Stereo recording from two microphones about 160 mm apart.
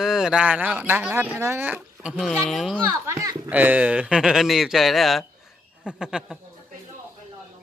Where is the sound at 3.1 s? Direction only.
20° right (ahead or behind).